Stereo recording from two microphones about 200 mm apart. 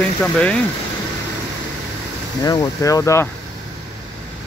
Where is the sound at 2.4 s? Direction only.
15° left (ahead or behind).